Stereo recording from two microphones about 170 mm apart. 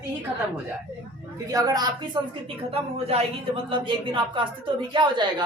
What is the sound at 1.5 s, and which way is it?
Speech, 20° right (ahead or behind).